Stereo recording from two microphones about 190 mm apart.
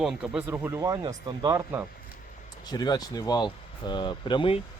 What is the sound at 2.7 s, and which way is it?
Speech, 20° left (ahead or behind).